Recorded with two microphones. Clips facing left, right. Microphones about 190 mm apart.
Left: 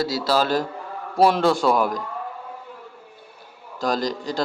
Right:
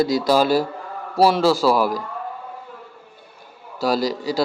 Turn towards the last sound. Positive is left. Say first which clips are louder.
# right 3 dB
turn(degrees=-5)  # may be behind; listen again after turning